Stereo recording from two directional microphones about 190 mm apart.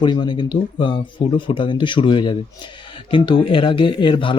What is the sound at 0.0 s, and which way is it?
Speech, 25° left (ahead or behind).